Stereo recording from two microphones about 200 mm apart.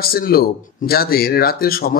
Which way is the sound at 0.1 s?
50° left (ahead or behind).